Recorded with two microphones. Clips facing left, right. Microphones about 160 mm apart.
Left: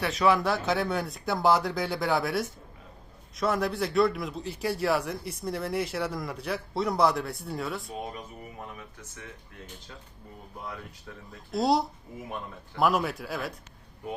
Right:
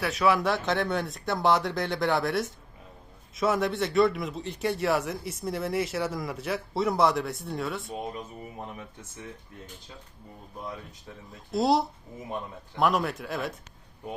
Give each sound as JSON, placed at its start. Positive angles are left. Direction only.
{"t": 0.0, "sound": "a man's voice", "side_deg": 0}
{"t": 11.5, "sound": "a man's voice", "side_deg": 0}